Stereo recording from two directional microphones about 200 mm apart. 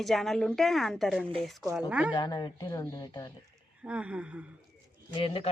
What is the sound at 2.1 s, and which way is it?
Speech, 20° left (ahead or behind).